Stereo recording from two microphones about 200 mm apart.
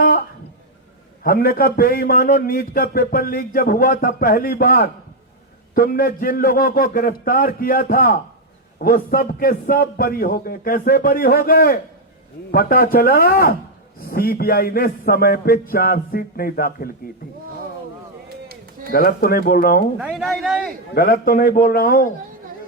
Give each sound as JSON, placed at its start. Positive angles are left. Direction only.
{"t": 1.2, "sound": "a man's voice", "side_deg": 50}
{"t": 18.9, "sound": "a man's voice", "side_deg": 45}
{"t": 20.0, "sound": "speech", "side_deg": -5}
{"t": 20.9, "sound": "a man's voice", "side_deg": 50}